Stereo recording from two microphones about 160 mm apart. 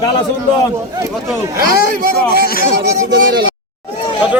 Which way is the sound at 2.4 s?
65° left (ahead or behind).